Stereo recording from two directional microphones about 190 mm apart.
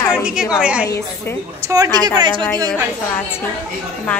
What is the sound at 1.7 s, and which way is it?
Speech, 20° right (ahead or behind).